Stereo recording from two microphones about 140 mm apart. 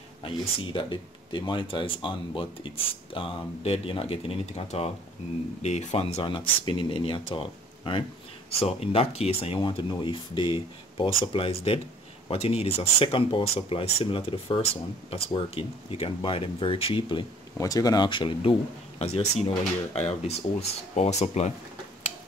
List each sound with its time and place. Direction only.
0.2 s speech: 35° left (ahead or behind)
17.6 s speech: 25° left (ahead or behind); by 21.5 s 55° left (ahead or behind)